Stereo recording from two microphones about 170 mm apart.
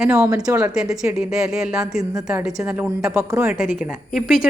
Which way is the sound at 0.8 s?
Centre (ahead or behind).